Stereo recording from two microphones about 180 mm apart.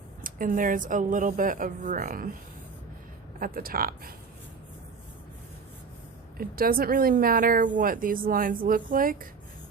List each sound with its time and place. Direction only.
0.2 s speech: 50° right (ahead or behind)
3.4 s speech: 55° right (ahead or behind)
6.3 s speech: 55° right (ahead or behind)